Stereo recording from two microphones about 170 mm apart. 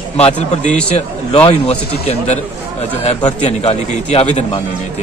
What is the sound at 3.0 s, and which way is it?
Speech, 35° left (ahead or behind).